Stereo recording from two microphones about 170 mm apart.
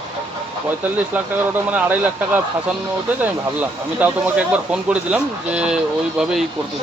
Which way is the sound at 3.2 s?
10° right (ahead or behind).